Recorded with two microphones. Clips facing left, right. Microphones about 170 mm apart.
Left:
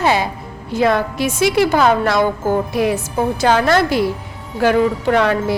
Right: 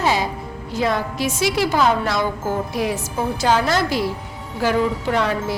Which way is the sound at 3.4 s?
60° left (ahead or behind).